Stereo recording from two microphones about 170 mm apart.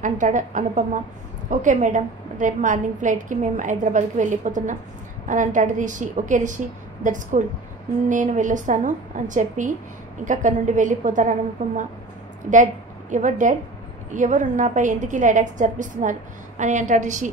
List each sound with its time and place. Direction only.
0.0 s a woman's voice: 50° right (ahead or behind)
13.1 s a woman's voice: 45° right (ahead or behind)